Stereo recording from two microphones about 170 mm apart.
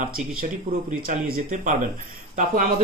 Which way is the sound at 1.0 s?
60° right (ahead or behind).